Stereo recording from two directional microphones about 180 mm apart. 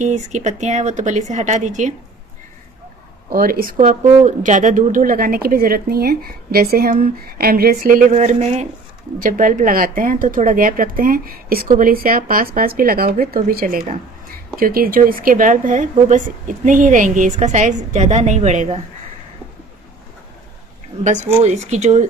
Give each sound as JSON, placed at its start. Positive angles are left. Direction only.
{"t": 0.0, "sound": "a woman's voice", "side_deg": -40}
{"t": 3.3, "sound": "speech", "side_deg": -55}
{"t": 21.0, "sound": "a woman's voice", "side_deg": -40}